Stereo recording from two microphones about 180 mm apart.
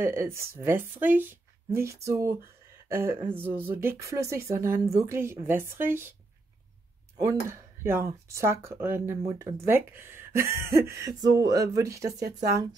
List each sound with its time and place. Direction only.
0.0 s speech: 15° right (ahead or behind)
7.2 s speech: 15° right (ahead or behind)